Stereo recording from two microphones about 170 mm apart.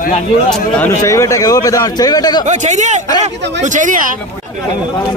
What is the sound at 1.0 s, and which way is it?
A man's voice, 20° left (ahead or behind).